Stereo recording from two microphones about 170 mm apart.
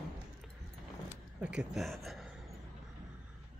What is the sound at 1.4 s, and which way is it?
Speech, 5° right (ahead or behind).